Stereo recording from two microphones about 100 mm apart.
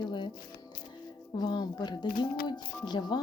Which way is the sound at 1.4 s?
45° left (ahead or behind).